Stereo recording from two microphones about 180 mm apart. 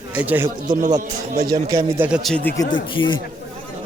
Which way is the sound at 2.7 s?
25° left (ahead or behind).